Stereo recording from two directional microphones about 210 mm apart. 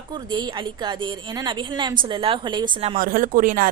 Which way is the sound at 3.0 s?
40° right (ahead or behind).